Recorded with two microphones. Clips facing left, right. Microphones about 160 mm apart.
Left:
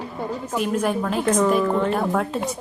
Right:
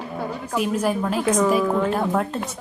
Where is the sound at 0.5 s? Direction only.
5° right (ahead or behind).